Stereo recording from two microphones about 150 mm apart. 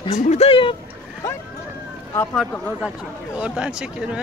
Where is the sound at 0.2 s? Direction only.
45° left (ahead or behind).